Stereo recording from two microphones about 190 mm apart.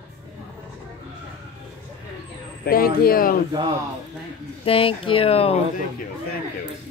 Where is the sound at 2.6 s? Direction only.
50° left (ahead or behind).